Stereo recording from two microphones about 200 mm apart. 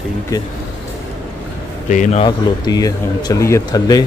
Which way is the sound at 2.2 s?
20° left (ahead or behind).